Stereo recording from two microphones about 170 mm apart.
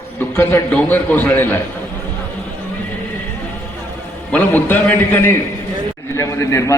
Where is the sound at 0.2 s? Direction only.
10° left (ahead or behind).